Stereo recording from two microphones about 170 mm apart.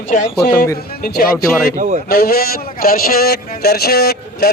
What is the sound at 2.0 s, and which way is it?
A man's voice, 60° left (ahead or behind).